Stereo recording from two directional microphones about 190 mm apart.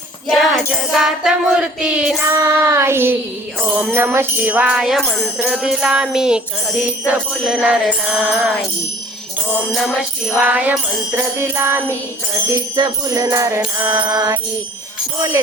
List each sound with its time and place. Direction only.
0.3 s jingle bell: centre (ahead or behind)
2.4 s music: 15° right (ahead or behind)
3.6 s jingle bell: 5° right (ahead or behind)
9.7 s jingle bell: centre (ahead or behind)
11.3 s music: 15° right (ahead or behind)